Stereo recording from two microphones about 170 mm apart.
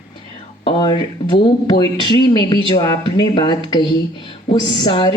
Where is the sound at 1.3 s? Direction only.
25° left (ahead or behind).